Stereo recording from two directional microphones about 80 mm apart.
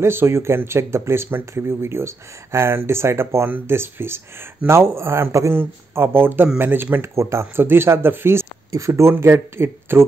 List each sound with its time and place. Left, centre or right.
0.0 s speech: right